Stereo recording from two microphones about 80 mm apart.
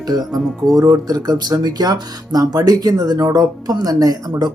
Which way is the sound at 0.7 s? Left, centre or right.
Right.